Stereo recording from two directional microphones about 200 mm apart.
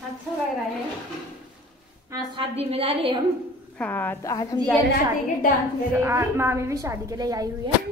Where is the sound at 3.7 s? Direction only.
10° left (ahead or behind).